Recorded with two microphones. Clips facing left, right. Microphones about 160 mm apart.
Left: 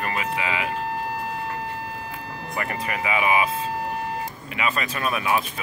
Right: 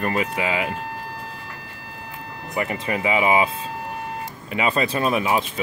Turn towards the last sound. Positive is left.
turn(degrees=-25)  # may be behind; listen again after turning